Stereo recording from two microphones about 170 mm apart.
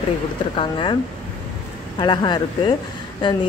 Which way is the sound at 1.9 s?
25° left (ahead or behind).